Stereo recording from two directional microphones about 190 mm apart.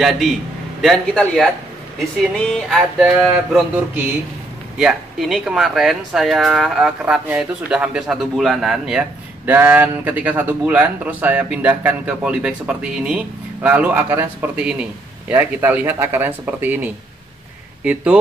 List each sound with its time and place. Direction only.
0.7 s speech: centre (ahead or behind)